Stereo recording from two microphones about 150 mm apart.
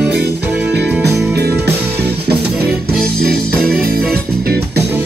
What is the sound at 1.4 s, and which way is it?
Music, 90° right.